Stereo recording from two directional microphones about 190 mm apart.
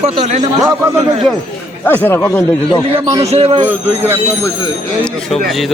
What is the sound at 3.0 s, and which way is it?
Speech, 25° right (ahead or behind).